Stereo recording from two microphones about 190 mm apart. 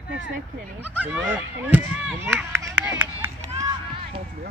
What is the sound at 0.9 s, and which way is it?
Speech, 10° right (ahead or behind).